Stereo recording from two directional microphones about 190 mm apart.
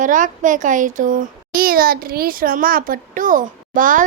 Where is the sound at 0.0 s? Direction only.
45° right (ahead or behind).